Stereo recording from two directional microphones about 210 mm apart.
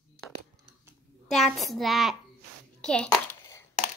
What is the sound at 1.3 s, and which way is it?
Speech, centre (ahead or behind).